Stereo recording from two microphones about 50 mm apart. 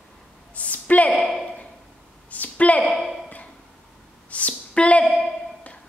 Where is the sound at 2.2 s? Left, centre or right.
Left.